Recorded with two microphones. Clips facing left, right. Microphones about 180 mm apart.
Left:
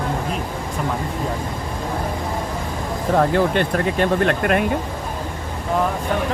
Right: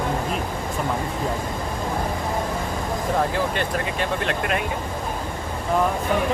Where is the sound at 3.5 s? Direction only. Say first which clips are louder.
Left 6 dB; 50° left (ahead or behind).